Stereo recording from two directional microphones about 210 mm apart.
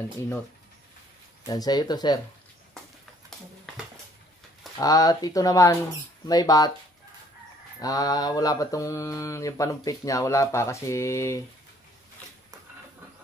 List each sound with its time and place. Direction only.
1.4 s speech: 15° left (ahead or behind)
3.3 s a sound: centre (ahead or behind)
4.7 s mantra: 15° left (ahead or behind)
7.8 s mantra: 15° left (ahead or behind)